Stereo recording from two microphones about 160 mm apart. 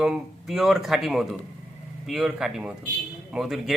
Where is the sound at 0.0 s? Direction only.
Centre (ahead or behind).